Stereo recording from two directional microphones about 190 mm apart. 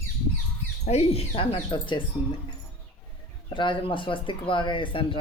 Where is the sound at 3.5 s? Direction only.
25° left (ahead or behind).